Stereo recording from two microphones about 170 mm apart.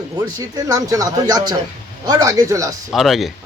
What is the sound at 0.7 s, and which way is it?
Speech, 20° right (ahead or behind).